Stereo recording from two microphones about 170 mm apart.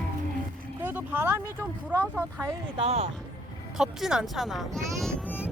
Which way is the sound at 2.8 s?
35° right (ahead or behind).